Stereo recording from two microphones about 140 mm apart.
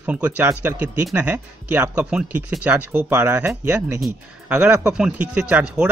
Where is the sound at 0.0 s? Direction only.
10° right (ahead or behind).